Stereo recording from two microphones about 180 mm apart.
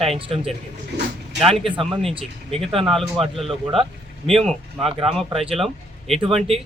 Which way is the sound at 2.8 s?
Centre (ahead or behind).